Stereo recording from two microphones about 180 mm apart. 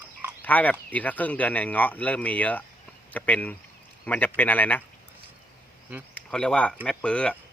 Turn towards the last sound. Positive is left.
turn(degrees=5)  # may be behind; listen again after turning